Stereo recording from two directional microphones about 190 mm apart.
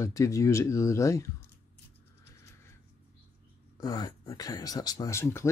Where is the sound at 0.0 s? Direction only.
15° left (ahead or behind).